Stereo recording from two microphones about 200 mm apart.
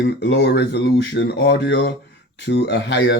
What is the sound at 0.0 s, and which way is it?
Speech, 60° left (ahead or behind).